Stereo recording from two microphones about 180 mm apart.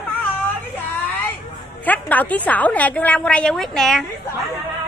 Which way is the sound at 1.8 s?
10° left (ahead or behind).